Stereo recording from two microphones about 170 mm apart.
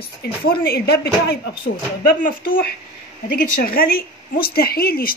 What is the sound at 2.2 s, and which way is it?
Speech, 55° left (ahead or behind).